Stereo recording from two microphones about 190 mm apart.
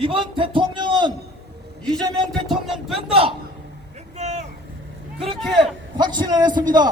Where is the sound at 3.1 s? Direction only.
30° right (ahead or behind).